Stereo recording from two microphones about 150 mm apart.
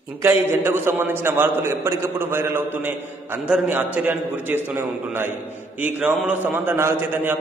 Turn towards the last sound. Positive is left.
turn(degrees=-15)  # may be behind; listen again after turning